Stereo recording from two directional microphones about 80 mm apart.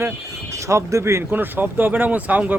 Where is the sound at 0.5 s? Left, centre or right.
Right.